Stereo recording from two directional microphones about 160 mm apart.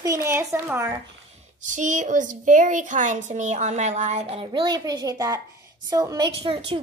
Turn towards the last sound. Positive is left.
turn(degrees=-35)  # may be behind; listen again after turning